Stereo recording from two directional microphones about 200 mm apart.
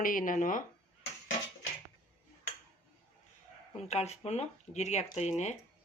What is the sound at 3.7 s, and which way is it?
Speech, 35° left (ahead or behind).